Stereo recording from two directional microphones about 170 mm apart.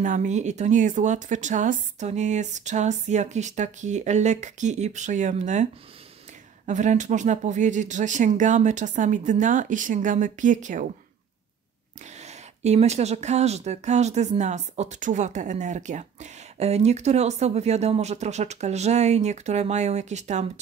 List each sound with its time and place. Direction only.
0.0 s speech: 50° right (ahead or behind)
12.2 s speech: 40° right (ahead or behind)